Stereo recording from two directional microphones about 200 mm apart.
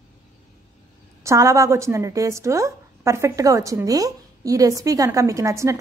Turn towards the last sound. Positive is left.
turn(degrees=-15)  # may be behind; listen again after turning